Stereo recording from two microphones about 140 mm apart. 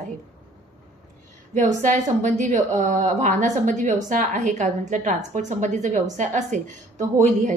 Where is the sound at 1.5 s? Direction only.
60° right (ahead or behind).